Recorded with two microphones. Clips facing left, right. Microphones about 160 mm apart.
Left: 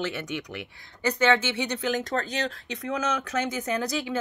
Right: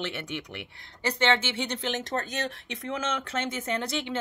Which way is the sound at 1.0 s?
25° right (ahead or behind).